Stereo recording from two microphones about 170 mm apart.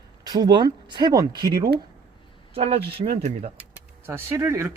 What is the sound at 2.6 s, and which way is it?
Speech, 35° right (ahead or behind).